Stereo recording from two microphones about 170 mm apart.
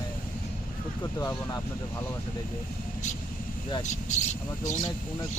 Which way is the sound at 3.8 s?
45° left (ahead or behind).